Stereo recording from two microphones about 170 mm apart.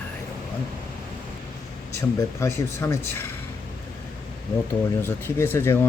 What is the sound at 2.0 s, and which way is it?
Speech, 15° left (ahead or behind).